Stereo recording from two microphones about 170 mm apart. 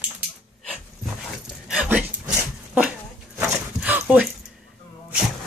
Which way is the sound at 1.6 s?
5° right (ahead or behind).